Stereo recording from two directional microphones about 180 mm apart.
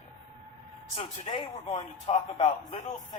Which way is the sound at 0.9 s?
30° left (ahead or behind).